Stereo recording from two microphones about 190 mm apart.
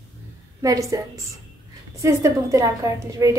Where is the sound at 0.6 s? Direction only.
15° right (ahead or behind).